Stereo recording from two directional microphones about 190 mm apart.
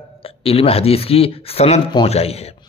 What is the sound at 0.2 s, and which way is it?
Speech, 30° left (ahead or behind).